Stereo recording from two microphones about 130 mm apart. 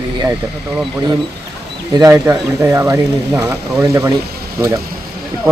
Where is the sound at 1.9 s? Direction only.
25° right (ahead or behind).